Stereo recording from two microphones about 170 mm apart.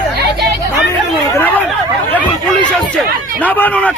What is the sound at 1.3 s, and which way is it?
Chatter, 10° left (ahead or behind).